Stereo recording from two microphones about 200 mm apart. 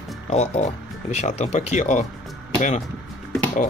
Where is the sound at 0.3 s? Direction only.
35° left (ahead or behind).